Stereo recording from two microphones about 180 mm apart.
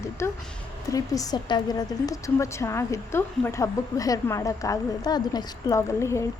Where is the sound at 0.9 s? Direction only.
20° left (ahead or behind).